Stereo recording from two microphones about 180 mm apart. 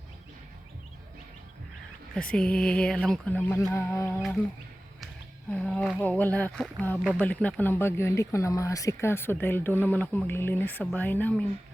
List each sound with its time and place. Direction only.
2.1 s speech: 5° left (ahead or behind)
5.5 s speech: 5° left (ahead or behind)